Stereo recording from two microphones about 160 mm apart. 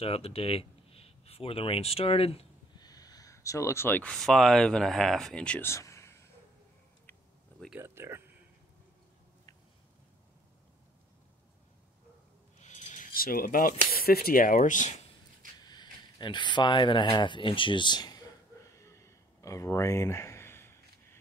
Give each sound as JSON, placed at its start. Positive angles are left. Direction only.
{"t": 0.0, "sound": "speech", "side_deg": 35}
{"t": 2.8, "sound": "speech", "side_deg": 25}
{"t": 7.7, "sound": "speech", "side_deg": -15}
{"t": 12.5, "sound": "keys jangling", "side_deg": 50}
{"t": 13.9, "sound": "speech", "side_deg": 70}
{"t": 15.6, "sound": "speech", "side_deg": 25}
{"t": 18.9, "sound": "a sound", "side_deg": 20}